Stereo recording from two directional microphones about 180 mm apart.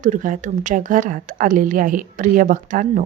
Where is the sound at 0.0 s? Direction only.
45° right (ahead or behind).